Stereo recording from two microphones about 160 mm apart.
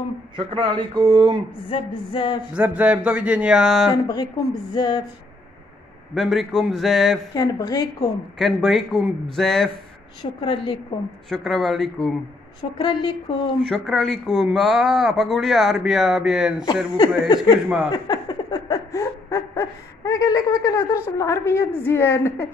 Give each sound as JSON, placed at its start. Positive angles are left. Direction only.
{"t": 0.4, "sound": "speech", "side_deg": -30}
{"t": 1.7, "sound": "speech", "side_deg": 30}
{"t": 2.5, "sound": "speech", "side_deg": -10}
{"t": 3.9, "sound": "speech", "side_deg": 25}
{"t": 6.1, "sound": "speech", "side_deg": 0}
{"t": 7.3, "sound": "speech", "side_deg": 25}
{"t": 8.4, "sound": "speech", "side_deg": 0}
{"t": 10.4, "sound": "a woman's voice", "side_deg": 30}
{"t": 11.2, "sound": "speech", "side_deg": 0}
{"t": 12.7, "sound": "speech", "side_deg": 30}
{"t": 13.6, "sound": "speech", "side_deg": 0}
{"t": 16.9, "sound": "speech", "side_deg": 25}
{"t": 17.9, "sound": "a sound", "side_deg": 25}